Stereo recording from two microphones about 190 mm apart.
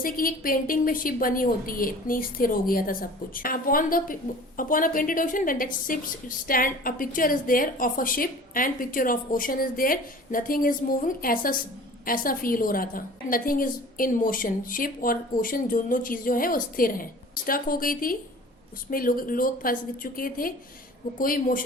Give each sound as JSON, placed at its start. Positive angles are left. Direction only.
{"t": 0.0, "sound": "a woman's voice", "side_deg": 50}